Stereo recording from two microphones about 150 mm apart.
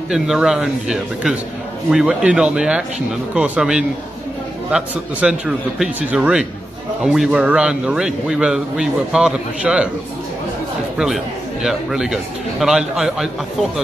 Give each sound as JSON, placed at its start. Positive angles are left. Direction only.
{"t": 0.1, "sound": "a man's voice", "side_deg": -5}
{"t": 11.6, "sound": "a man's voice", "side_deg": -5}